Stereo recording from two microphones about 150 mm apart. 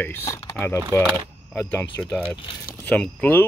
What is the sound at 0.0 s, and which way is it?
Speech, 15° left (ahead or behind).